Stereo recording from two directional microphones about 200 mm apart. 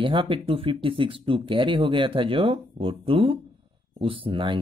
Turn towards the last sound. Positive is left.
turn(degrees=-25)  # may be behind; listen again after turning